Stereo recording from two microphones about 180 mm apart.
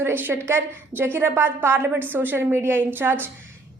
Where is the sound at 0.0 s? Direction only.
10° right (ahead or behind).